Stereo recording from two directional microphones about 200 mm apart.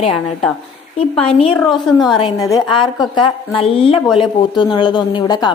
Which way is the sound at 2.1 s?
20° left (ahead or behind).